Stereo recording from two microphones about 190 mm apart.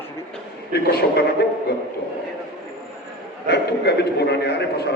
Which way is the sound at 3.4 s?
60° left (ahead or behind).